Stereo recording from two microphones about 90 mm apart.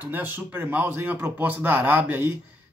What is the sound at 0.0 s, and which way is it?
Speech, 20° right (ahead or behind).